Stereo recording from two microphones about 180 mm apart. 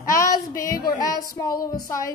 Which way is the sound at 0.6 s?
55° left (ahead or behind).